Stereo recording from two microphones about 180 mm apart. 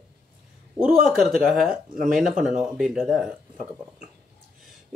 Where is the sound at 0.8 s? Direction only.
Centre (ahead or behind).